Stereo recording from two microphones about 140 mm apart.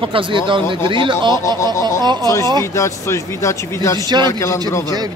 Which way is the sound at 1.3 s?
20° left (ahead or behind).